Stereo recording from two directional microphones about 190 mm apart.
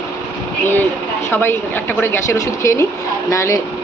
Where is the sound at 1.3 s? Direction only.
10° left (ahead or behind).